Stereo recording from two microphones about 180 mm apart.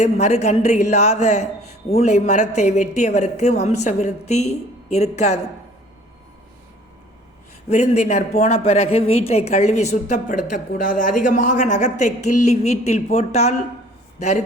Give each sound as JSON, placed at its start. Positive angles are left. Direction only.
{"t": 0.0, "sound": "a woman's voice", "side_deg": 40}
{"t": 7.7, "sound": "a woman's voice", "side_deg": 40}